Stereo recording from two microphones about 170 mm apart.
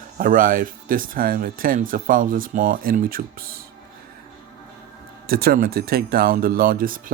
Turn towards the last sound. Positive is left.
turn(degrees=-55)  # may be behind; listen again after turning